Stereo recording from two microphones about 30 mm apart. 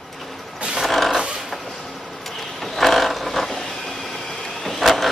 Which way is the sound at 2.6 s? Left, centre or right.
Centre.